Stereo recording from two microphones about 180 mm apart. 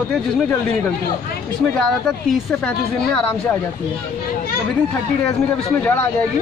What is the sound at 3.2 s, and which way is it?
Speech, 5° left (ahead or behind).